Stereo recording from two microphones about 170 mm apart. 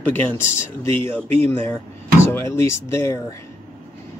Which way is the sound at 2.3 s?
15° left (ahead or behind).